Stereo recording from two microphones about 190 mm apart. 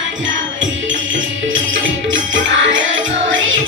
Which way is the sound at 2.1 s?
85° right.